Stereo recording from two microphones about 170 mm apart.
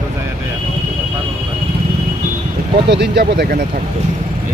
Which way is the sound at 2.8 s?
80° right.